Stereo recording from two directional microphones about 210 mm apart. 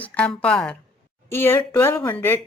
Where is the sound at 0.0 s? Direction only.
5° left (ahead or behind).